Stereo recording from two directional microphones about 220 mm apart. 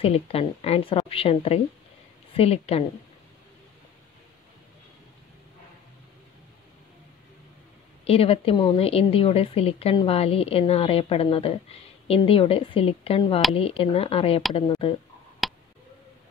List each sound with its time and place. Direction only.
0.0 s a woman's voice: 25° left (ahead or behind)
8.0 s a woman's voice: 25° left (ahead or behind)
15.4 s tick: centre (ahead or behind)